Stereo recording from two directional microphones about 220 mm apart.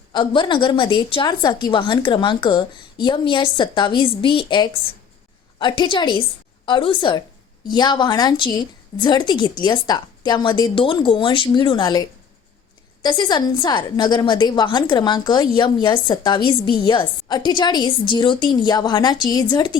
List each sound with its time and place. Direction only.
0.1 s a woman's voice: 20° left (ahead or behind)